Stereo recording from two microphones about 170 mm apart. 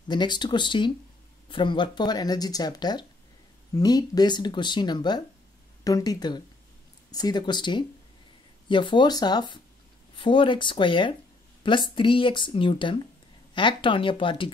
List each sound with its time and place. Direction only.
0.1 s speech: 25° left (ahead or behind)